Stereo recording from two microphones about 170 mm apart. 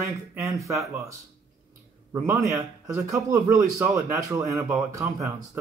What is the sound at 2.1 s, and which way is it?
Speech, 15° right (ahead or behind).